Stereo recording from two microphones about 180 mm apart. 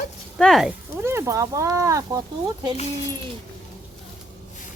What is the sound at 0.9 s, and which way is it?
Speech, 15° right (ahead or behind).